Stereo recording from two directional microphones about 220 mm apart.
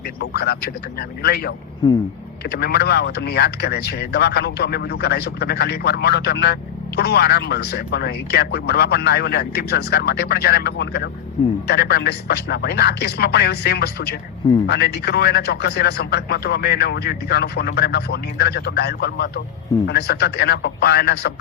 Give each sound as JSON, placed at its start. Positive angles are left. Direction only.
{"t": 0.2, "sound": "speech", "side_deg": 45}